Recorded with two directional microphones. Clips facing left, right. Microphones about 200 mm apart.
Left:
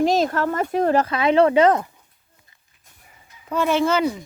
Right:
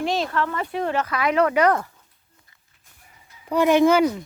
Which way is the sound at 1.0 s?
25° left (ahead or behind).